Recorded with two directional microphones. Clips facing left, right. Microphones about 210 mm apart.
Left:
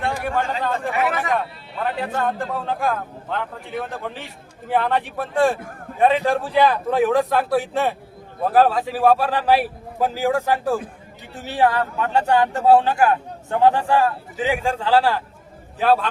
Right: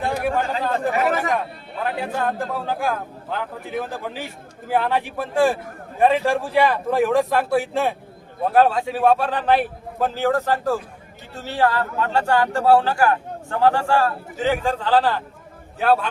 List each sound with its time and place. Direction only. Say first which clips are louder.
0.0 s speech: right 1 dB; centre (ahead or behind)
0.9 s speech: right 2 dB; 40° right (ahead or behind)
1.8 s a man's voice: left 1 dB; centre (ahead or behind)